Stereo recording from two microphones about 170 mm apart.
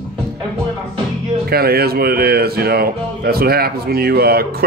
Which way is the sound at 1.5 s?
65° right (ahead or behind).